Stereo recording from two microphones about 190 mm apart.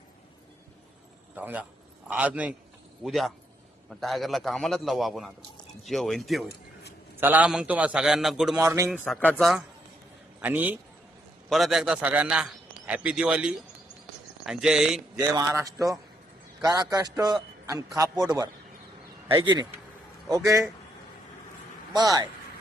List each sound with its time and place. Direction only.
1.4 s a man's voice: 10° right (ahead or behind)
8.6 s a man's voice: 15° right (ahead or behind)
8.9 s a man's voice: 5° left (ahead or behind)
15.1 s a man's voice: 20° right (ahead or behind)
21.9 s a man's voice: 20° right (ahead or behind)